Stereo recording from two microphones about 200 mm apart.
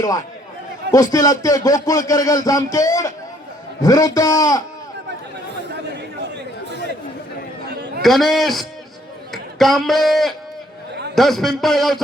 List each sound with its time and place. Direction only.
0.9 s speech: 15° left (ahead or behind)
8.0 s a man's voice: centre (ahead or behind)